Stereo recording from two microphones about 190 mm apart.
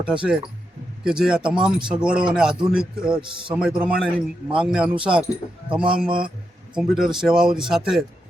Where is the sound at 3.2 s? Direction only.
25° right (ahead or behind).